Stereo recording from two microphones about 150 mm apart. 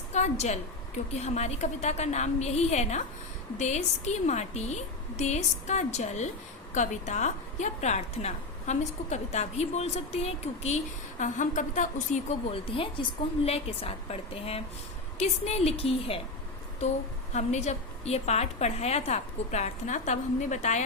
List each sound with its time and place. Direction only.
0.1 s a woman's voice: 50° left (ahead or behind)
11.2 s a woman's voice: 55° left (ahead or behind); by 16.2 s 40° left (ahead or behind)
17.3 s a woman's voice: 50° left (ahead or behind)